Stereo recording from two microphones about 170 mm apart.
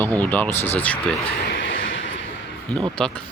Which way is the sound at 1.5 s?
85° left.